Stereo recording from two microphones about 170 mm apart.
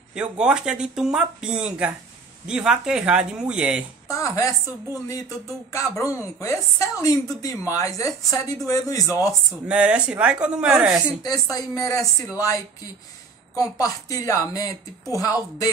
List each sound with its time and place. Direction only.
0.1 s speech: 5° right (ahead or behind)
4.1 s speech: 20° left (ahead or behind)
9.7 s speech: 5° right (ahead or behind)
11.5 s speech: 20° left (ahead or behind)
13.6 s speech: 20° left (ahead or behind)